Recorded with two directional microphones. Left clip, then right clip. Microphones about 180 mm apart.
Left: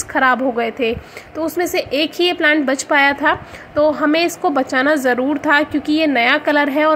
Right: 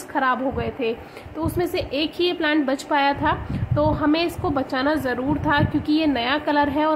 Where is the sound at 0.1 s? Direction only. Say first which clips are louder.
Left 7 dB; 20° left (ahead or behind).